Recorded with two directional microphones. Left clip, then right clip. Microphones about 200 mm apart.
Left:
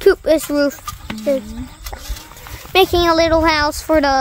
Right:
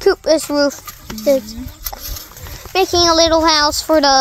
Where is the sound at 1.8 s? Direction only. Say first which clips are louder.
Right 4 dB; 45° right (ahead or behind).